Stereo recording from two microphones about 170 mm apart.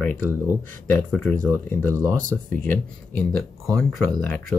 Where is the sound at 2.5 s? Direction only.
10° left (ahead or behind).